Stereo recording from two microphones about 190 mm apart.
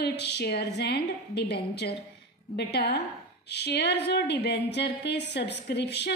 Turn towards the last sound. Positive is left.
turn(degrees=60)  # may be behind; listen again after turning